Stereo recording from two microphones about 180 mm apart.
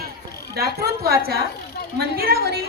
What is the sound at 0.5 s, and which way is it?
A woman's voice, 60° right (ahead or behind).